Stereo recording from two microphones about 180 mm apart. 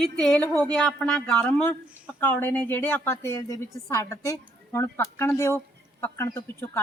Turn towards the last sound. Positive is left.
turn(degrees=15)  # may be behind; listen again after turning